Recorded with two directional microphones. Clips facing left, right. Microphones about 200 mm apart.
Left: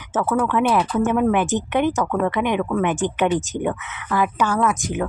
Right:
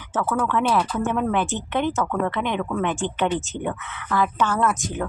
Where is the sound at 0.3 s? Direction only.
15° left (ahead or behind).